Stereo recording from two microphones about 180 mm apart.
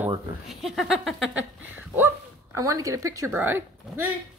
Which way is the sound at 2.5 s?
15° right (ahead or behind).